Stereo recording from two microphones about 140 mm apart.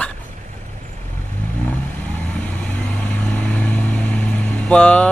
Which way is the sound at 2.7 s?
10° left (ahead or behind).